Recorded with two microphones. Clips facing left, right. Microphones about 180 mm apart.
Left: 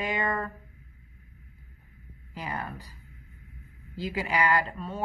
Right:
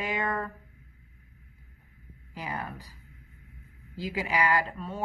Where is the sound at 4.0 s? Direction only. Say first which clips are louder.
Left 1 dB; 10° right (ahead or behind).